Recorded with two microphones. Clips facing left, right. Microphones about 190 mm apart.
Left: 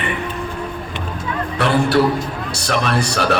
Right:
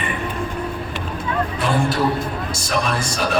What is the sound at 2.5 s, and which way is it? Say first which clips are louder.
Speech: left 4 dB; 70° left (ahead or behind).